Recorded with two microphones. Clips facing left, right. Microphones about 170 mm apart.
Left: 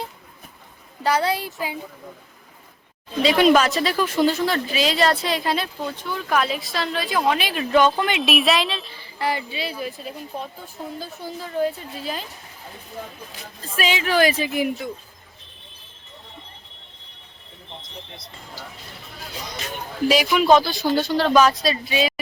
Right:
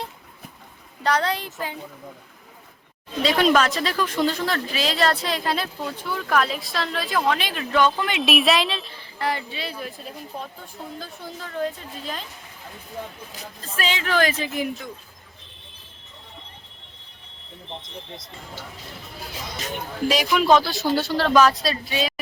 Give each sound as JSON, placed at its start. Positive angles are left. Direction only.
{"t": 1.0, "sound": "a woman's voice", "side_deg": 10}
{"t": 3.2, "sound": "a woman's voice", "side_deg": 5}
{"t": 7.7, "sound": "speech", "side_deg": 20}
{"t": 8.1, "sound": "a woman's voice", "side_deg": 0}
{"t": 13.7, "sound": "a woman's voice", "side_deg": 10}
{"t": 20.1, "sound": "a woman's voice", "side_deg": 5}